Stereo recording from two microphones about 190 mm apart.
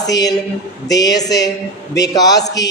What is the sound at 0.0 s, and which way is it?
A man's voice, 20° left (ahead or behind).